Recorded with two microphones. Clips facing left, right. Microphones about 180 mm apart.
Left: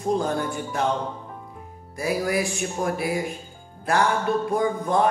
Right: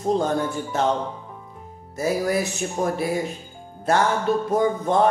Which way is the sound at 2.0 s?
25° right (ahead or behind).